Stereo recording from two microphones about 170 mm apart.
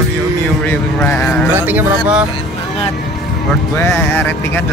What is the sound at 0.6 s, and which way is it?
Speech, 10° left (ahead or behind).